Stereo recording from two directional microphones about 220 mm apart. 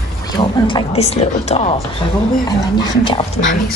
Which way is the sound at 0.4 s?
20° left (ahead or behind).